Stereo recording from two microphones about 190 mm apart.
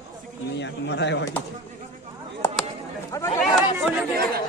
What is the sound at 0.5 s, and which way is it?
Speech, 65° left (ahead or behind).